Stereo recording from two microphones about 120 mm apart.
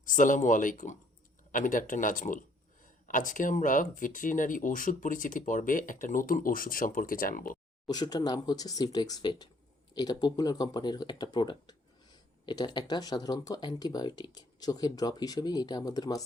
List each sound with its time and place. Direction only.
0.0 s speech: 90° left
7.9 s speech: 35° left (ahead or behind)